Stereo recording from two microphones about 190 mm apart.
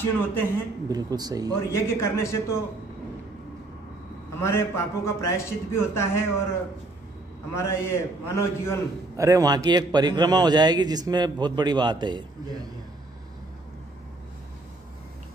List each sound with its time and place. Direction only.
0.0 s a man's voice: 10° left (ahead or behind)
0.8 s a man's voice: 20° right (ahead or behind)
1.7 s a man's voice: 15° left (ahead or behind)
4.4 s a man's voice: 15° left (ahead or behind)
7.5 s a man's voice: 15° left (ahead or behind)
9.1 s a man's voice: 15° right (ahead or behind)